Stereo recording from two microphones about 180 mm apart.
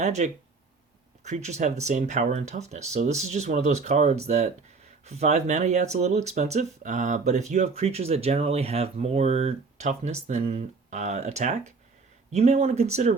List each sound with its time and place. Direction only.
0.0 s speech: 40° right (ahead or behind)